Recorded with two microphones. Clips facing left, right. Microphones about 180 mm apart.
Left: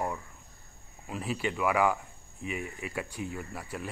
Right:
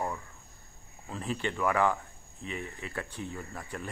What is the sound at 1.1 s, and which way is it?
Speech, 10° left (ahead or behind).